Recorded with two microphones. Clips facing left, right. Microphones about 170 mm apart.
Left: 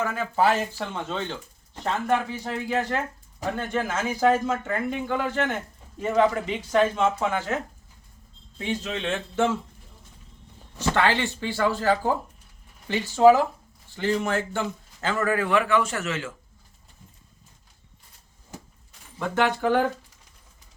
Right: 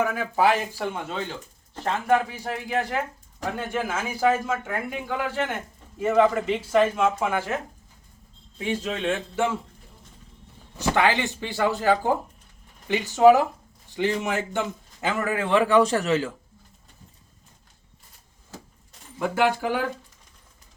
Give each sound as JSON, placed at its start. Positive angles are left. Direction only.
{"t": 0.1, "sound": "speech", "side_deg": -10}
{"t": 8.5, "sound": "speech", "side_deg": -10}
{"t": 10.8, "sound": "a man's voice", "side_deg": -15}
{"t": 19.2, "sound": "speech", "side_deg": -10}